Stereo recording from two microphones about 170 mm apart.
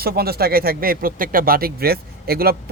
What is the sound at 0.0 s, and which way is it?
Speech, 65° right (ahead or behind).